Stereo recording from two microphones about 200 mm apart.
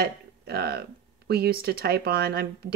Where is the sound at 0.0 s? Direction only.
50° right (ahead or behind).